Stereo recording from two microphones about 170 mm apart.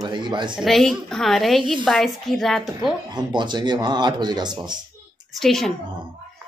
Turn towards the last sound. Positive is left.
turn(degrees=0)  # may be behind; listen again after turning